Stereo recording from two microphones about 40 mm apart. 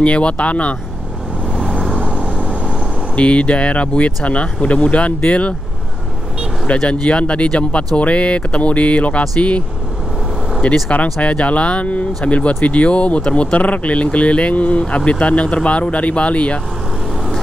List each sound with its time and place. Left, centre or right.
0.0 s speech: left
1.6 s vehicle: centre
2.0 s vehicle: right
3.2 s speech: left
6.7 s speech: left
10.6 s speech: left